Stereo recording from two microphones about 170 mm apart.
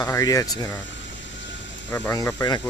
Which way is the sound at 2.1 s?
20° left (ahead or behind).